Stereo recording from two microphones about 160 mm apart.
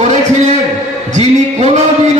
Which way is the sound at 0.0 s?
45° right (ahead or behind).